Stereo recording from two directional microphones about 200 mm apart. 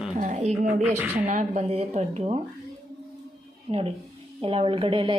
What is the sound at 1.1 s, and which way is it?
A woman's voice, 35° right (ahead or behind).